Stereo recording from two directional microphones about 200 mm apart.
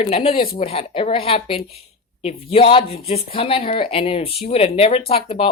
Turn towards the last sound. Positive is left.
turn(degrees=30)  # may be behind; listen again after turning